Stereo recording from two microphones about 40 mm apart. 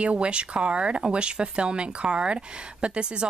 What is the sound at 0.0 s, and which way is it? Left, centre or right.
Speech, right.